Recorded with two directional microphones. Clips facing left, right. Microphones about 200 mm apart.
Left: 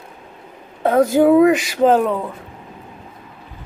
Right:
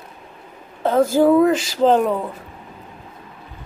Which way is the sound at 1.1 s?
15° left (ahead or behind).